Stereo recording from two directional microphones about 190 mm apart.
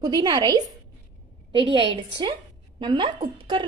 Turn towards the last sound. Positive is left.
turn(degrees=-25)  # may be behind; listen again after turning